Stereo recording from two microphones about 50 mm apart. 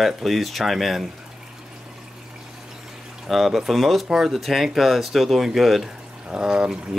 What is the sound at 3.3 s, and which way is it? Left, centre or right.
Speech, centre.